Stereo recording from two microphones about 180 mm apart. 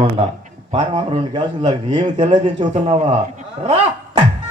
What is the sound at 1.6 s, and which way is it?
Speech, 35° right (ahead or behind).